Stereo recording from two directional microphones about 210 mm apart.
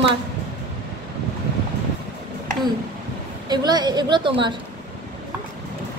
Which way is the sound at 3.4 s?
20° right (ahead or behind).